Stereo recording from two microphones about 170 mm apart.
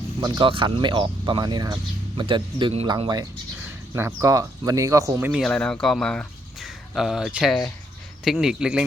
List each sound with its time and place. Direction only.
0.2 s speech: 25° right (ahead or behind)
5.3 s speech: 5° left (ahead or behind)